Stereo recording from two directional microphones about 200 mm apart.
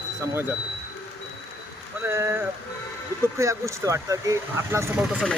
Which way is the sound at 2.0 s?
10° right (ahead or behind).